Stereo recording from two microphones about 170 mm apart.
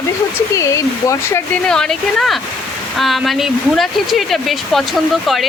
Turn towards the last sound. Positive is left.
turn(degrees=0)  # may be behind; listen again after turning